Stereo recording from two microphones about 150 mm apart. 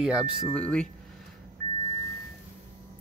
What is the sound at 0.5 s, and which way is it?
Speech, 10° left (ahead or behind).